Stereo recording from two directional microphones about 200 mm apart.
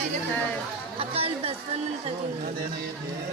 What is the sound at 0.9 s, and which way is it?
Chatter, 30° right (ahead or behind).